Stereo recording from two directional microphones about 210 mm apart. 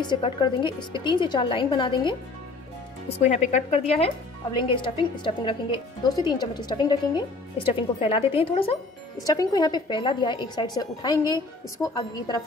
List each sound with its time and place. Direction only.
0.0 s a woman's voice: 20° left (ahead or behind)
3.2 s a woman's voice: 30° left (ahead or behind)